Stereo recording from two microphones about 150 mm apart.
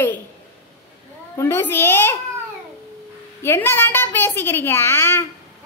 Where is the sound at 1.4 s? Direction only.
15° left (ahead or behind).